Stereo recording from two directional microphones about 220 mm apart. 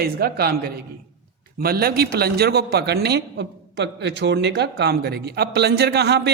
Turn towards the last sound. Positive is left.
turn(degrees=-50)  # may be behind; listen again after turning